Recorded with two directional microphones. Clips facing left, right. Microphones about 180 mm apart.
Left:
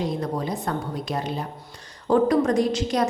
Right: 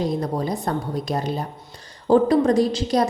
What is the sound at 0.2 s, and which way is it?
A woman's voice, 35° right (ahead or behind).